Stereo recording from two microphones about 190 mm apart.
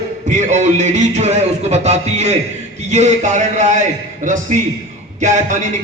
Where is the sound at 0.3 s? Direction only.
40° right (ahead or behind).